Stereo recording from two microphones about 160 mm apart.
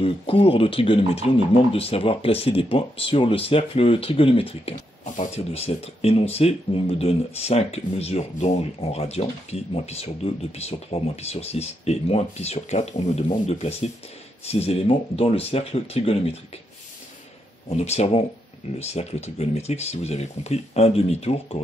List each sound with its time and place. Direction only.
0.0 s speech: 35° left (ahead or behind)
17.6 s speech: 40° left (ahead or behind)